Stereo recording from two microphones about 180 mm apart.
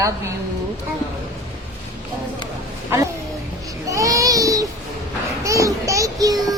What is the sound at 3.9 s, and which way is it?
Child singing, 20° right (ahead or behind).